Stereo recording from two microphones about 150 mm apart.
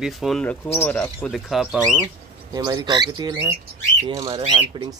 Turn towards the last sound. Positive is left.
turn(degrees=-40)  # may be behind; listen again after turning